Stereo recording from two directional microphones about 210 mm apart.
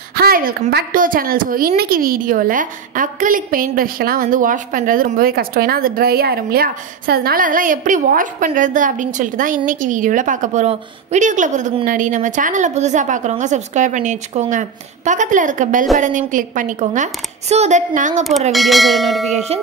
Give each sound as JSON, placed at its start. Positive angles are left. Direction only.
{"t": 0.1, "sound": "a woman's voice", "side_deg": -45}
{"t": 18.5, "sound": "bell", "side_deg": 0}
{"t": 19.3, "sound": "a woman's voice", "side_deg": -30}